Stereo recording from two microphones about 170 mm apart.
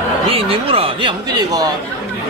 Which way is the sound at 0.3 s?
35° right (ahead or behind).